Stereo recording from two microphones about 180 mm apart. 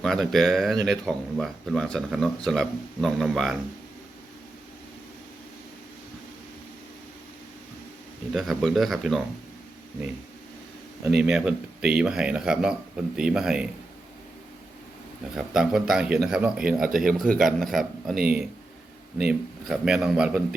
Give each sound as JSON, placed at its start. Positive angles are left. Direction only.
{"t": 0.0, "sound": "speech", "side_deg": 0}
{"t": 8.3, "sound": "speech", "side_deg": 0}
{"t": 11.2, "sound": "speech", "side_deg": -5}
{"t": 15.4, "sound": "speech", "side_deg": -5}
{"t": 16.8, "sound": "speech", "side_deg": -50}
{"t": 17.4, "sound": "speech", "side_deg": 0}
{"t": 19.3, "sound": "speech", "side_deg": -5}